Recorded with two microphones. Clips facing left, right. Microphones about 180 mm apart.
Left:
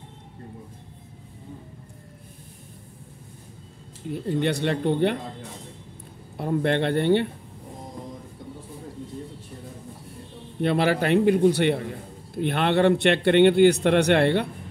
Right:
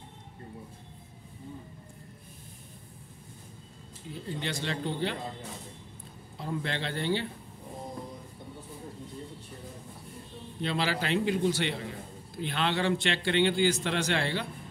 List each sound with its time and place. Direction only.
4.1 s a man's voice: 55° left (ahead or behind)
6.3 s a man's voice: 60° left (ahead or behind)
10.6 s a man's voice: 55° left (ahead or behind)